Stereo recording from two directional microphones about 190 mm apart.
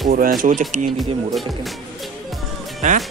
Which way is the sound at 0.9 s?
Centre (ahead or behind).